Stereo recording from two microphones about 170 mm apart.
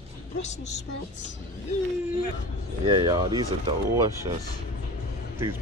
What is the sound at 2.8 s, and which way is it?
Speech, 25° right (ahead or behind).